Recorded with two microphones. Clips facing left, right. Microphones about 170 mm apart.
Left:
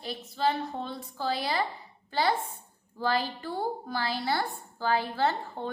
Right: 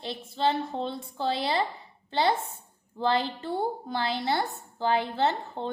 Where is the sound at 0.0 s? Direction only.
25° right (ahead or behind).